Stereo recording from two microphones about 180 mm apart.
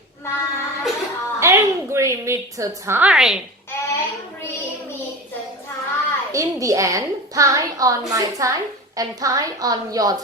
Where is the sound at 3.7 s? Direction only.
15° left (ahead or behind).